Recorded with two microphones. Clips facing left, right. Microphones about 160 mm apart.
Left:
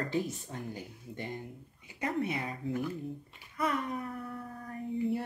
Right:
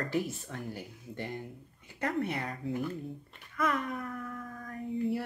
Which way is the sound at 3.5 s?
30° left (ahead or behind).